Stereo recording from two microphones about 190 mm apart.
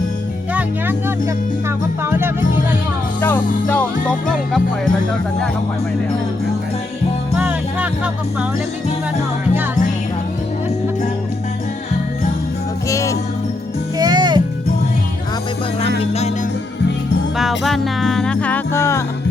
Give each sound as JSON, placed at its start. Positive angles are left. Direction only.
{"t": 0.5, "sound": "speech", "side_deg": -10}
{"t": 2.0, "sound": "music", "side_deg": -10}
{"t": 3.2, "sound": "music", "side_deg": 10}
{"t": 7.3, "sound": "music", "side_deg": -5}
{"t": 12.9, "sound": "jingle bell", "side_deg": 15}
{"t": 14.0, "sound": "music", "side_deg": -20}
{"t": 17.6, "sound": "music", "side_deg": 0}